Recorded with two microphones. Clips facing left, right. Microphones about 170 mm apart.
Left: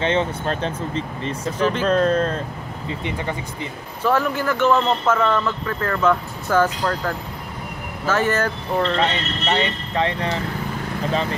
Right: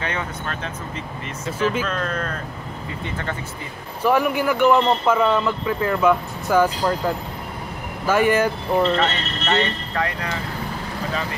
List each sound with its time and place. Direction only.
0.0 s speech: 25° left (ahead or behind)
4.0 s a man's voice: 15° right (ahead or behind)
9.0 s speech: 15° left (ahead or behind)
10.0 s speech: 30° left (ahead or behind)